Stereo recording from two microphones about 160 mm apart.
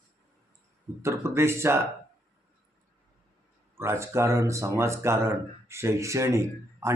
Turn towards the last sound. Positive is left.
turn(degrees=-20)  # may be behind; listen again after turning